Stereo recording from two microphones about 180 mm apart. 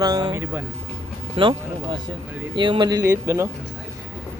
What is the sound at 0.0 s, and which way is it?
Speech, 20° right (ahead or behind).